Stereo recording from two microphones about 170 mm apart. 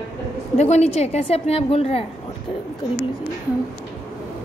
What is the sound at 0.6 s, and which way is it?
A woman's voice, 40° left (ahead or behind).